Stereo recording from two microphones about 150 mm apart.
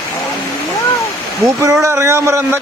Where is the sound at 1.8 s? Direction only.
15° right (ahead or behind).